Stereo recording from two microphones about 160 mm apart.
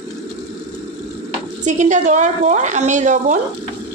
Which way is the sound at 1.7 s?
50° right (ahead or behind).